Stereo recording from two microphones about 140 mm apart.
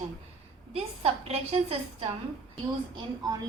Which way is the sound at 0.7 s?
45° right (ahead or behind).